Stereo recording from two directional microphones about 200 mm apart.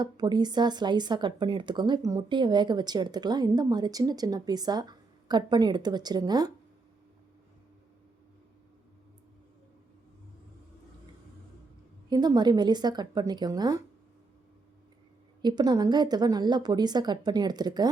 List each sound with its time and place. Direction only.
0.0 s speech: 20° right (ahead or behind)
12.0 s speech: 20° right (ahead or behind)
15.4 s speech: 20° right (ahead or behind)